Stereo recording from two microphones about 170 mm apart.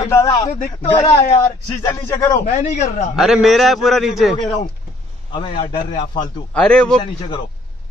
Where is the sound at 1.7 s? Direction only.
20° left (ahead or behind).